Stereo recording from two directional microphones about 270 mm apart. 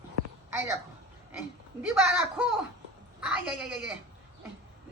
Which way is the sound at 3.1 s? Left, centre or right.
Centre.